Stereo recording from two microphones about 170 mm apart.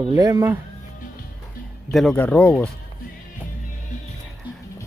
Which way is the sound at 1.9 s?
Centre (ahead or behind).